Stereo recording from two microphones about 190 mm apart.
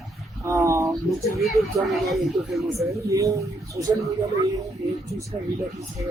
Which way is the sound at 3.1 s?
15° right (ahead or behind).